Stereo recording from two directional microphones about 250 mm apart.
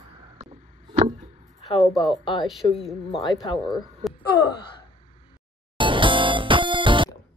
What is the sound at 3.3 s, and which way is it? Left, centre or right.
Speech, centre.